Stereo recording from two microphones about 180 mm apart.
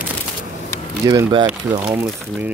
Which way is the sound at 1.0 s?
20° right (ahead or behind).